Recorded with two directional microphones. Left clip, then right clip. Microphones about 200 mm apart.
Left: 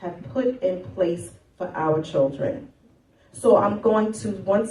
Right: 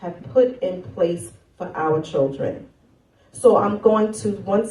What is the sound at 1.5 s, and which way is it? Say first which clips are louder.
Speech: right 2 dB; 30° right (ahead or behind).